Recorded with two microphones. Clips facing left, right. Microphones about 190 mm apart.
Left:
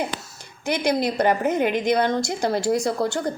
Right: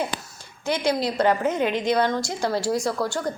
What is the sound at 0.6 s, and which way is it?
A woman's voice, 15° left (ahead or behind).